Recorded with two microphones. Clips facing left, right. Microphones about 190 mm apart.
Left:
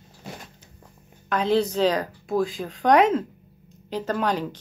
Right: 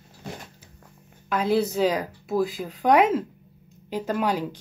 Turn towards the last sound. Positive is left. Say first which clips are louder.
# even
turn(degrees=-10)  # may be behind; listen again after turning